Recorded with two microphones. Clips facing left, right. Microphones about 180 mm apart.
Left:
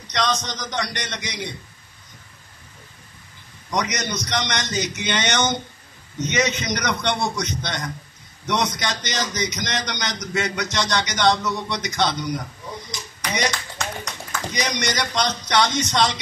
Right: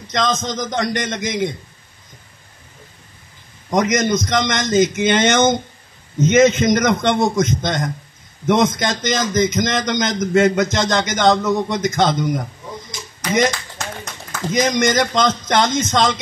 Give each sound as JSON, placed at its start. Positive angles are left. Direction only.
{"t": 0.1, "sound": "a man's voice", "side_deg": -45}
{"t": 3.7, "sound": "a man's voice", "side_deg": -50}
{"t": 14.5, "sound": "a man's voice", "side_deg": -50}